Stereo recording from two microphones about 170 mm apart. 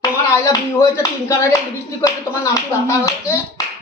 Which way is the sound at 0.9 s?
15° left (ahead or behind).